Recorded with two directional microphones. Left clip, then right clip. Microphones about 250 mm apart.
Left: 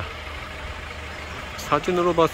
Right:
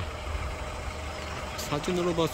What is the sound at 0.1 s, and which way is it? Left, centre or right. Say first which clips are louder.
Vehicle: left 3 dB; right.